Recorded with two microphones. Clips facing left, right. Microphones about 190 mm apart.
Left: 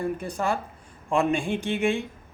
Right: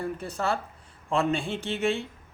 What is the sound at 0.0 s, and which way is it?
Speech, 15° left (ahead or behind).